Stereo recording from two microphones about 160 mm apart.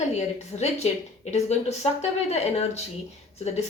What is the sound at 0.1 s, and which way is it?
A woman's voice, 45° left (ahead or behind).